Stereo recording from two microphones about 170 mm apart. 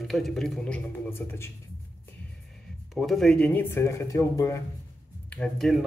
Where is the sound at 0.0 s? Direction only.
Centre (ahead or behind).